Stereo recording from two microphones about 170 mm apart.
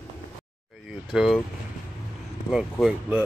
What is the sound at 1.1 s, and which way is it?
Speech, centre (ahead or behind).